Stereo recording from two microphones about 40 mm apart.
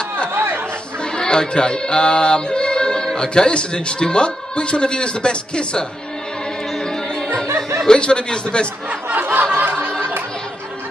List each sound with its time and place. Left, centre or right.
0.3 s chatter: right
1.1 s speech: centre
7.3 s music: centre
8.0 s speech: left
9.1 s a sound: right
9.6 s snicker: right